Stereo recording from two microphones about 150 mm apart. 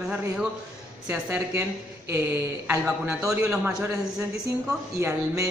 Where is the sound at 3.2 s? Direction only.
20° right (ahead or behind).